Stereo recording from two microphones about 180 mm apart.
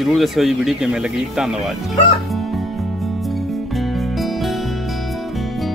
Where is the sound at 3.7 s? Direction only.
Centre (ahead or behind).